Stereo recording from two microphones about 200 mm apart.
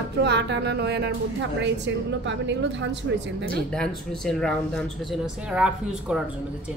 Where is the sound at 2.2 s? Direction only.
65° right (ahead or behind).